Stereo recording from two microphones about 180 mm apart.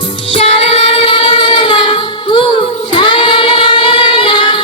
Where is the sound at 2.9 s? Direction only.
25° left (ahead or behind).